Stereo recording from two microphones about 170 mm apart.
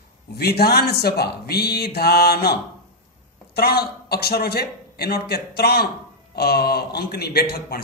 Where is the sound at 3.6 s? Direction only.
70° left (ahead or behind).